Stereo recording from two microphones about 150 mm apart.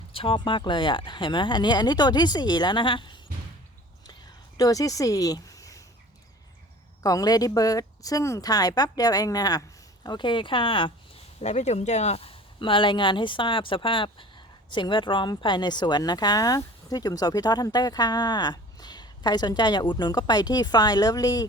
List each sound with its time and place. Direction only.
0.1 s speech: 35° left (ahead or behind)
4.5 s speech: 25° left (ahead or behind)
7.0 s speech: 25° left (ahead or behind)
11.3 s speech: 50° left (ahead or behind); by 21.4 s 25° left (ahead or behind)